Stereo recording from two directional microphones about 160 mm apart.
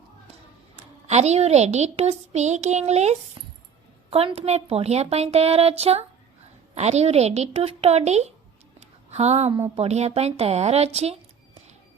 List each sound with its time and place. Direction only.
1.0 s a woman's voice: 45° right (ahead or behind)
3.4 s a sound: 30° right (ahead or behind)
4.1 s a woman's voice: 40° right (ahead or behind)